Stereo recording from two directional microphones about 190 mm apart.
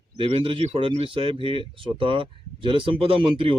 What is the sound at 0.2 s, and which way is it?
Speech, 30° right (ahead or behind).